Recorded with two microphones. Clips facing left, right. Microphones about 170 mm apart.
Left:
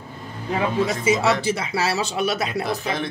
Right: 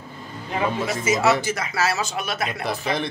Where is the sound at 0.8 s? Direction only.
30° left (ahead or behind).